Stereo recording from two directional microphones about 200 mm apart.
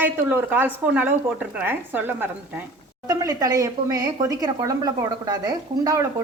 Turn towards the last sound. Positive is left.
turn(degrees=-15)  # may be behind; listen again after turning